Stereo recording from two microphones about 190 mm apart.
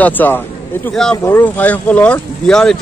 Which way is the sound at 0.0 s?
10° left (ahead or behind).